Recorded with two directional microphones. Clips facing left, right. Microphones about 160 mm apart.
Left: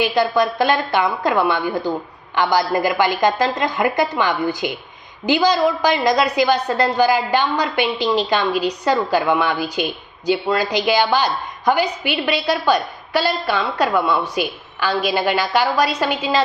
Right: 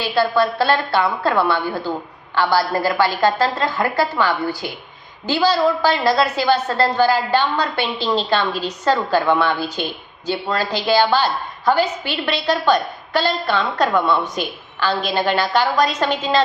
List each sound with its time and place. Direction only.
0.0 s a woman's voice: 15° left (ahead or behind)